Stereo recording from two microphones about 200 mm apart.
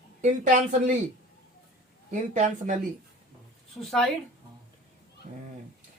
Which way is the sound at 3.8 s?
Centre (ahead or behind).